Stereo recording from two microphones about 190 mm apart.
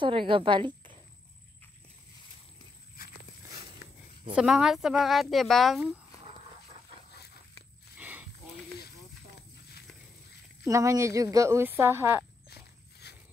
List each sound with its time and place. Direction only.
0.0 s a woman's voice: 25° right (ahead or behind)
4.3 s speech: 5° right (ahead or behind)
8.0 s a sound: 10° right (ahead or behind)
10.6 s speech: 15° right (ahead or behind)
13.0 s walk: 60° left (ahead or behind)